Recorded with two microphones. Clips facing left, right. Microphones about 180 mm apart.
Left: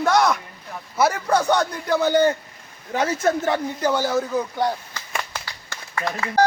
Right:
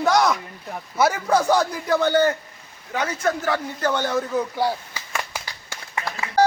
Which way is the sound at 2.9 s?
30° left (ahead or behind).